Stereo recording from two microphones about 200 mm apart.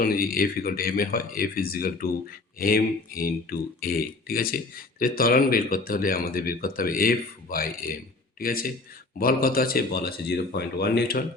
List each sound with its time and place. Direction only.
0.0 s speech: 50° left (ahead or behind)